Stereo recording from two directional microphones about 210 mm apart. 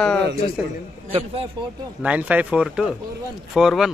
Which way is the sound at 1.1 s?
25° right (ahead or behind).